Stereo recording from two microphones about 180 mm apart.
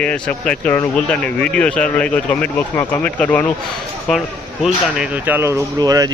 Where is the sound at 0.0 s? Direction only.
5° left (ahead or behind).